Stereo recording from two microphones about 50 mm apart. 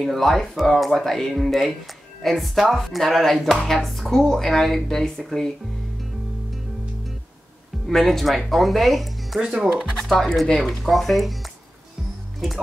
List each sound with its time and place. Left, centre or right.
0.0 s speech: centre
7.8 s speech: centre
9.4 s speech: centre
9.9 s speech: centre